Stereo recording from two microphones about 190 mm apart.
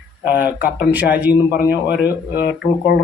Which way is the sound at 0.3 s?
10° right (ahead or behind).